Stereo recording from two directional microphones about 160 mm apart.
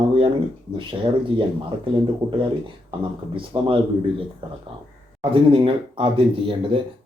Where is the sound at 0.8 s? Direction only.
30° right (ahead or behind).